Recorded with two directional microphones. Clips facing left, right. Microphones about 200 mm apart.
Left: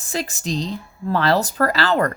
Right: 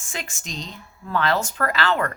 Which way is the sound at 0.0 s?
35° left (ahead or behind).